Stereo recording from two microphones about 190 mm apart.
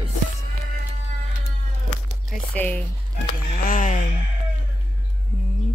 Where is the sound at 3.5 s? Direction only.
45° left (ahead or behind).